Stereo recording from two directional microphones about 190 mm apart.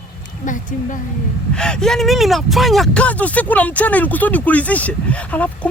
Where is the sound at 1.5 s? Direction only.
5° left (ahead or behind).